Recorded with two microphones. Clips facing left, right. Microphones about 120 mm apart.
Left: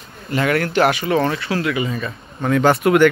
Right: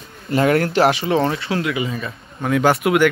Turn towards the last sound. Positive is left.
turn(degrees=-10)  # may be behind; listen again after turning